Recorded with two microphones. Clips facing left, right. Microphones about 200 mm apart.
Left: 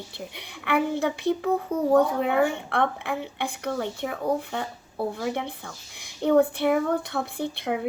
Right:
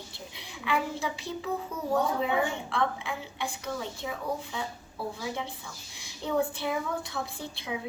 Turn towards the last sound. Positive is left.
turn(degrees=60)  # may be behind; listen again after turning